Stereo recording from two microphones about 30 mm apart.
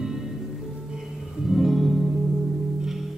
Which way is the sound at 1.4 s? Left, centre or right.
Centre.